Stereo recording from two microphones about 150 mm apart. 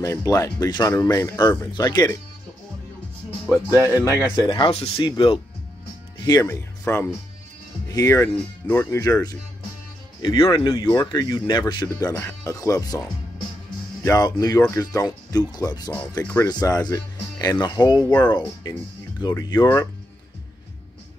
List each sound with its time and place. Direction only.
0.0 s speech: 20° left (ahead or behind)
3.8 s speech: 15° right (ahead or behind)
4.5 s speech: 35° left (ahead or behind); by 9.0 s 15° left (ahead or behind)
9.0 s speech: 25° left (ahead or behind)
14.0 s speech: 25° left (ahead or behind)
15.9 s speech: 10° left (ahead or behind)
16.4 s speech: 25° left (ahead or behind)